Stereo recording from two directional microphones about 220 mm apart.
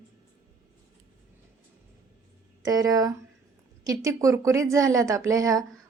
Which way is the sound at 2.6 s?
15° right (ahead or behind).